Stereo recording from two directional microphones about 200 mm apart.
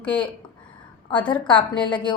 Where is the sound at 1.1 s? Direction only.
25° left (ahead or behind).